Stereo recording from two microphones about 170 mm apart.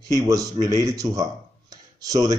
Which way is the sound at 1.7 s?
20° right (ahead or behind).